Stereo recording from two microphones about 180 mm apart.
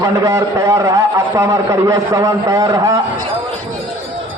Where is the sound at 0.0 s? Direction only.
20° right (ahead or behind).